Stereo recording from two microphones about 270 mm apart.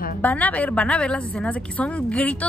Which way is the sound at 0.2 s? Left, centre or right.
Centre.